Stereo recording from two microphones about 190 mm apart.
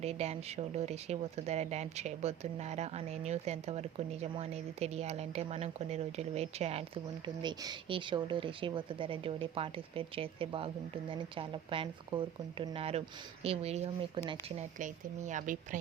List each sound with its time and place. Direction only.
0.0 s speech: 35° right (ahead or behind)